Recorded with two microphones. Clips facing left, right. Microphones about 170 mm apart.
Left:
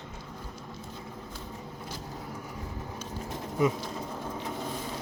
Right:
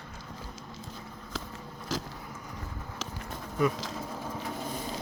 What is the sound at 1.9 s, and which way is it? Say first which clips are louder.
Vehicle: right 11 dB; 90° right.